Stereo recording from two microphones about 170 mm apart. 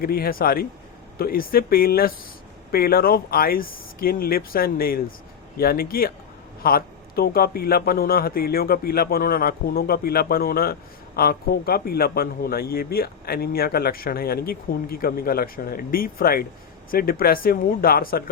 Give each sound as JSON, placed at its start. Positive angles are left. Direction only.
{"t": 0.0, "sound": "a man's voice", "side_deg": 60}